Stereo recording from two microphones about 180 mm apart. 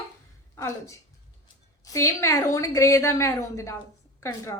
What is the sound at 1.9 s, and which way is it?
A woman's voice, 15° left (ahead or behind).